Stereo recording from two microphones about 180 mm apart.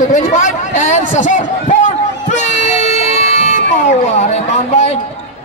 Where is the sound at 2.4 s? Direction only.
40° left (ahead or behind).